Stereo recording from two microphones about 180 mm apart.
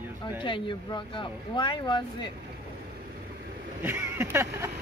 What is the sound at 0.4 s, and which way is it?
Speech, 25° left (ahead or behind).